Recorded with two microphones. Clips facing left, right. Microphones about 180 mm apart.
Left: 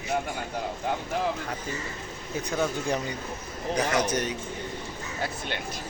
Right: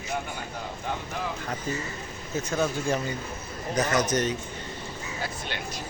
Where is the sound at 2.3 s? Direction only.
15° left (ahead or behind).